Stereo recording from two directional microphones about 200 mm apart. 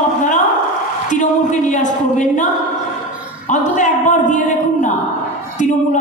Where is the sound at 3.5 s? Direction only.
40° left (ahead or behind).